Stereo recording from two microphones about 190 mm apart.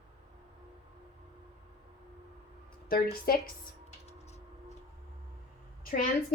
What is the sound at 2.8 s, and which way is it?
Speech, 50° left (ahead or behind).